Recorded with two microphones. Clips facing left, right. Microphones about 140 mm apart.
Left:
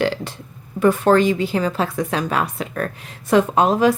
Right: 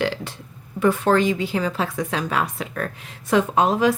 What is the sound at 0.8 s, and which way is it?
Speech, 45° left (ahead or behind).